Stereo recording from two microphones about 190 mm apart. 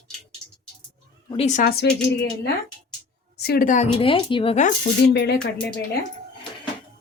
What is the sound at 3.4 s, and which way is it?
Speech, 55° left (ahead or behind).